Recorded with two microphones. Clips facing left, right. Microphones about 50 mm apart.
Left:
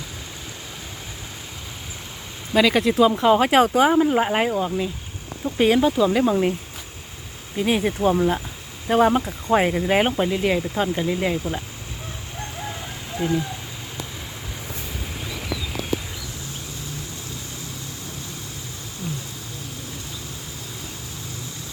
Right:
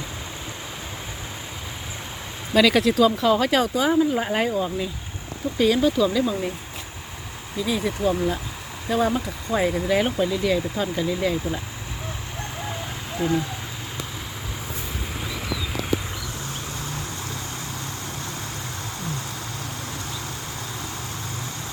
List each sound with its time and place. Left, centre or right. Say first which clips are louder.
2.6 s speech: even; centre
2.9 s speech: left 2 dB; left
4.5 s speech: left 2 dB; left
5.5 s speech: left 2 dB; left
6.1 s speech: left 4 dB; left
7.5 s speech: left 4 dB; left
8.1 s speech: left 4 dB; left
8.9 s speech: left 5 dB; left
13.1 s speech: even; centre